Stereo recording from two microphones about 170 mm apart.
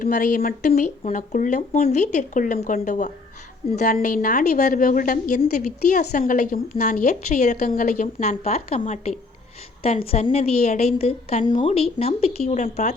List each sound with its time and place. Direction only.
0.0 s a woman's voice: 50° left (ahead or behind)